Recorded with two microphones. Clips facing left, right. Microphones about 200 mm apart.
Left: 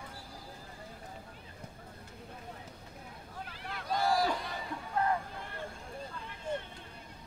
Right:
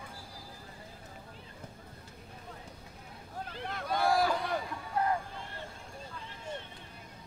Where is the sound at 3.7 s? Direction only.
60° right (ahead or behind).